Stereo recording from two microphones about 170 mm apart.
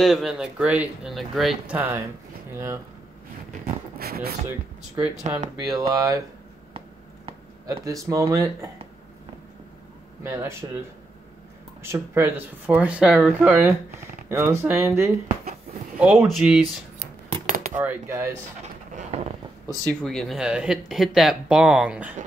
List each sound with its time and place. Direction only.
0.0 s speech: centre (ahead or behind)
2.5 s speech: 15° right (ahead or behind)
4.0 s speech: 60° right (ahead or behind)
4.5 s speech: 10° right (ahead or behind)
5.7 s speech: 20° right (ahead or behind)
7.6 s speech: 20° right (ahead or behind)
10.2 s speech: 15° right (ahead or behind)
11.8 s speech: 15° right (ahead or behind)
14.3 s speech: 15° right (ahead or behind)
16.0 s speech: 5° right (ahead or behind)
17.7 s speech: 15° right (ahead or behind)
18.6 s a sound: 40° right (ahead or behind)
20.0 s speech: 5° left (ahead or behind)